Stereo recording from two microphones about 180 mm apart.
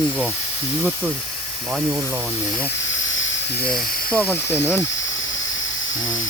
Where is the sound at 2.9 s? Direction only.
90° left.